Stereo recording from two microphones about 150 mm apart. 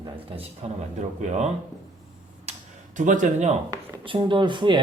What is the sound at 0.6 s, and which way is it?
Speech, 45° right (ahead or behind).